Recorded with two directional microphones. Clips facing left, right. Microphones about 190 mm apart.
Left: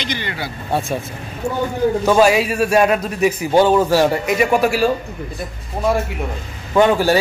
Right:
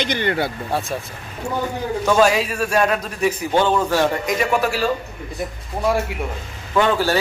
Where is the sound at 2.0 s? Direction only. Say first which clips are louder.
Left 1 dB; 10° left (ahead or behind).